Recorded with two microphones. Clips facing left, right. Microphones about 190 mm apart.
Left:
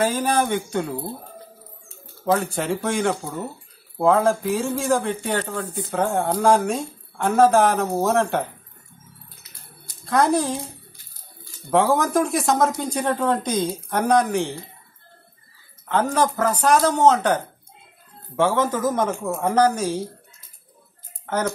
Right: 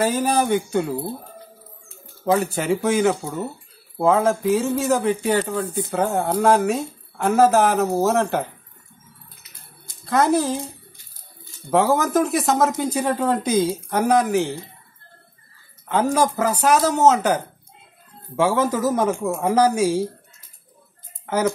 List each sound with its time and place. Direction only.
0.0 s speech: 5° right (ahead or behind)
2.3 s speech: 5° right (ahead or behind)
10.0 s speech: centre (ahead or behind)
11.7 s speech: centre (ahead or behind)
15.9 s a man's voice: 10° right (ahead or behind)
21.3 s speech: 10° right (ahead or behind)